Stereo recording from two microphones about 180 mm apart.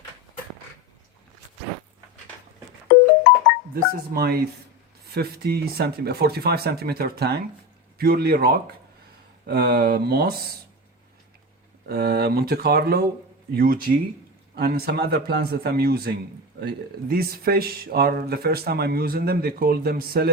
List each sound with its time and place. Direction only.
3.8 s speech: 55° right (ahead or behind)
11.9 s speech: 60° right (ahead or behind)